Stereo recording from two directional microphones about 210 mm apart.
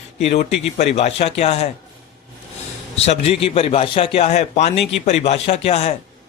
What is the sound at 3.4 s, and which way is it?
A man's voice, 25° left (ahead or behind).